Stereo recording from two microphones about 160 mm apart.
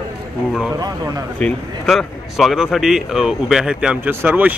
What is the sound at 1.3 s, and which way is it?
Speech, 5° left (ahead or behind).